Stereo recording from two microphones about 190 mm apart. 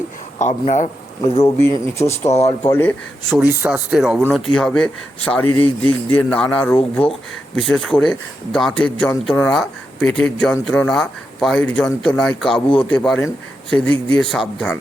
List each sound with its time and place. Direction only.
0.3 s speech: 40° left (ahead or behind)
1.5 s a man's voice: 10° left (ahead or behind)
3.3 s a man's voice: 5° right (ahead or behind)